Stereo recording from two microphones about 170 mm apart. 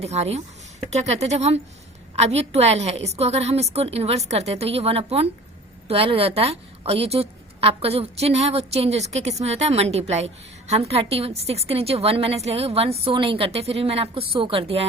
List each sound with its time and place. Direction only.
0.0 s a woman's voice: 40° right (ahead or behind)